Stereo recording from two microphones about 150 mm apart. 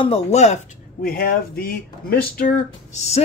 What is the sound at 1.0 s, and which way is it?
Speech, 85° left.